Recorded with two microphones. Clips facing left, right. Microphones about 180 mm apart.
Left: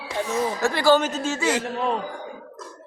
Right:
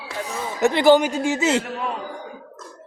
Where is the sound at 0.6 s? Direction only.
20° right (ahead or behind).